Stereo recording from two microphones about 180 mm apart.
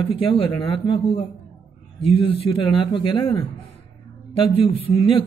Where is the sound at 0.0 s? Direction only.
30° left (ahead or behind).